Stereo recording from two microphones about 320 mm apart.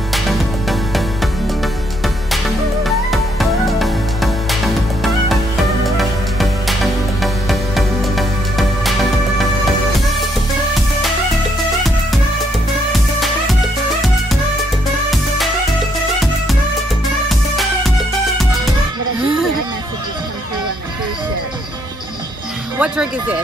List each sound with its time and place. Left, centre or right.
0.1 s music: centre
2.3 s music: centre
5.9 s music: centre
15.0 s music: centre
17.3 s music: centre
22.8 s music: centre